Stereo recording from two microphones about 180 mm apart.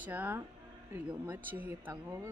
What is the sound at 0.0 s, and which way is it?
Speech, 10° right (ahead or behind).